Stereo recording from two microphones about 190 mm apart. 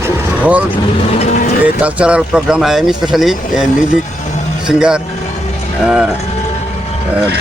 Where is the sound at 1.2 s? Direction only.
40° left (ahead or behind).